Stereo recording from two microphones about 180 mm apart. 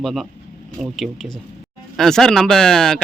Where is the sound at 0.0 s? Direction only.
Centre (ahead or behind).